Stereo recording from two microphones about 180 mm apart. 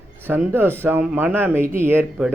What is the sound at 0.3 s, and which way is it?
Speech, 10° right (ahead or behind).